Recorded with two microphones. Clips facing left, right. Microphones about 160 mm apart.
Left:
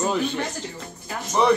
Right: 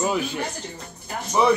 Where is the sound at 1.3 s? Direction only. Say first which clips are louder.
Even; 5° right (ahead or behind).